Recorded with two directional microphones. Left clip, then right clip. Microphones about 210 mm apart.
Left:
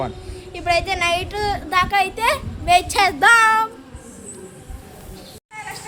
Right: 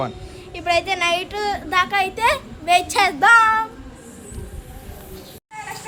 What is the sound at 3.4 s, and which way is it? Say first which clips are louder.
Meow: left 1 dB; 45° left (ahead or behind).